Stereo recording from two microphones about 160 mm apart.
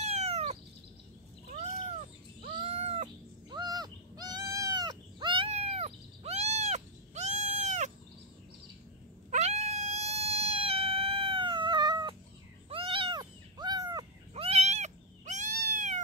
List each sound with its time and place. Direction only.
0.0 s cat: 40° right (ahead or behind)
2.6 s cat: 40° right (ahead or behind)
3.4 s goat: 25° right (ahead or behind); by 7.9 s 50° right (ahead or behind)
9.3 s cat: 45° right (ahead or behind); by 14.0 s 25° right (ahead or behind)
14.3 s cat: 40° right (ahead or behind)